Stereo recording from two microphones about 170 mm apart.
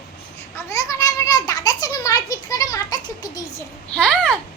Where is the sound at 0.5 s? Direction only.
20° left (ahead or behind).